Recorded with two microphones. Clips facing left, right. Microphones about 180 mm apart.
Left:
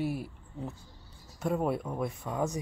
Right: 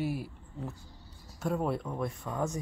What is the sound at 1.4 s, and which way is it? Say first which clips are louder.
Speech: left 2 dB; centre (ahead or behind).